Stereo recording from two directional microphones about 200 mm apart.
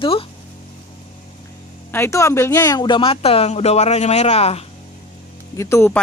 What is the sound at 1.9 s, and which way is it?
Speech, 15° left (ahead or behind).